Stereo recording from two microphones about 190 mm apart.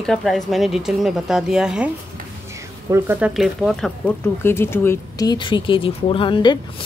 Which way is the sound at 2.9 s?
10° right (ahead or behind).